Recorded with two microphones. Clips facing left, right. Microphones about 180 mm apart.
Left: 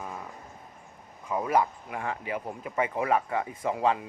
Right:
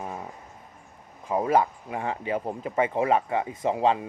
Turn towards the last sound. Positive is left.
turn(degrees=-25)  # may be behind; listen again after turning